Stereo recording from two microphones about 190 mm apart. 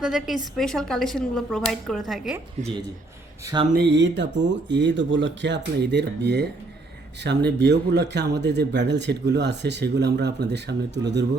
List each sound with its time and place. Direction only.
0.0 s speech: 5° right (ahead or behind)
3.4 s speech: 25° right (ahead or behind)
3.8 s speech: 65° right (ahead or behind)